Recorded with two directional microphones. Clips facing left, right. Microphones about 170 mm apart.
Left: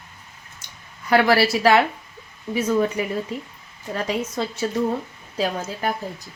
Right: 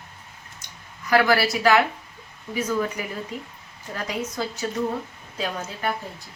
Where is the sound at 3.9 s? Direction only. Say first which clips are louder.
Left 4 dB; 30° left (ahead or behind).